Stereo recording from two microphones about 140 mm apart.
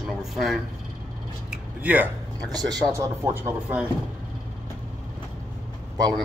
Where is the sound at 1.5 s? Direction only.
10° right (ahead or behind).